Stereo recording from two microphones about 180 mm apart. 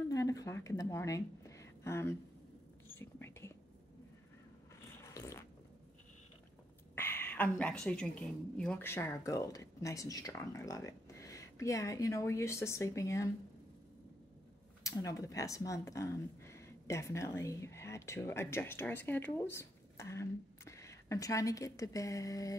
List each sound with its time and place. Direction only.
0.1 s a sound: 20° left (ahead or behind)
3.0 s whispering: 15° left (ahead or behind)
5.0 s fart: 15° left (ahead or behind)
7.0 s a woman's voice: 10° left (ahead or behind)
14.8 s speech: 20° left (ahead or behind)